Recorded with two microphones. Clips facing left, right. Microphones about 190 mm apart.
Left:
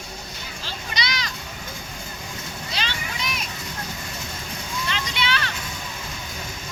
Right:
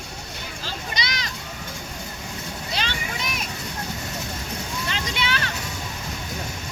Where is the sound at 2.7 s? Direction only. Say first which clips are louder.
Right 2 dB; 55° right (ahead or behind).